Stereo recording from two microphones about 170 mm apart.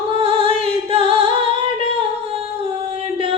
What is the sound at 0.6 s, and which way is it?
Singing, 35° right (ahead or behind).